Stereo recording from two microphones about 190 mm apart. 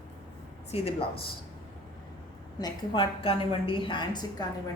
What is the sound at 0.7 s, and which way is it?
Speech, 35° left (ahead or behind).